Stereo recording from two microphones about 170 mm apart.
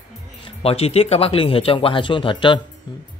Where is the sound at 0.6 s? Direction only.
35° left (ahead or behind).